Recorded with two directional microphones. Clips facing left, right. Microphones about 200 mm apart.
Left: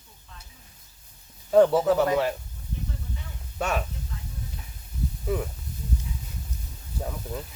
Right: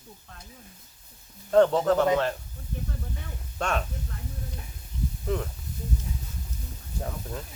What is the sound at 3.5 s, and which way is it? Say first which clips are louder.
Speech: left 1 dB; 5° left (ahead or behind).